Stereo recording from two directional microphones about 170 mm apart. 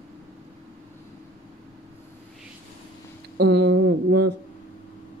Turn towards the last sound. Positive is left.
turn(degrees=-85)